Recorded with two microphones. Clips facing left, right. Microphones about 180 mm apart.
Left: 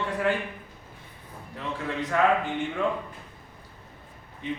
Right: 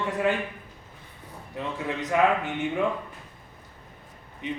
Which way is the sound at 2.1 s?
15° right (ahead or behind).